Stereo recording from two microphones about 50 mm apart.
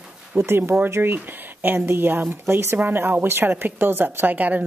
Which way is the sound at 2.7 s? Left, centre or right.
Right.